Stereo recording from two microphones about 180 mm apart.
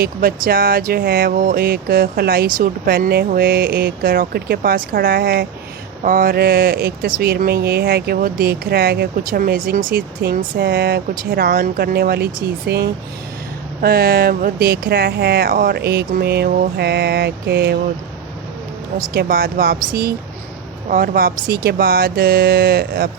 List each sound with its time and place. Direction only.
0.0 s speech: 55° right (ahead or behind)
19.1 s speech: 55° right (ahead or behind)